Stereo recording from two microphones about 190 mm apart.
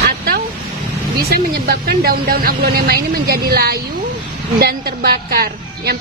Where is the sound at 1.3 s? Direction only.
55° right (ahead or behind).